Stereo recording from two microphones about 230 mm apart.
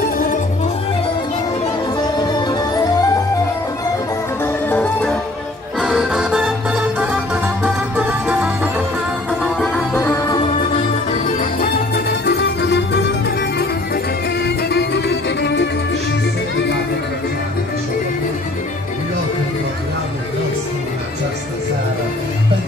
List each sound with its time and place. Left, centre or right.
2.3 s music: centre
4.4 s music: centre
5.8 s music: centre
9.9 s music: centre
11.1 s music: left